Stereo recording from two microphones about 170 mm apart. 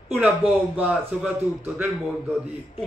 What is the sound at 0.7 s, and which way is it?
Speech, 10° right (ahead or behind).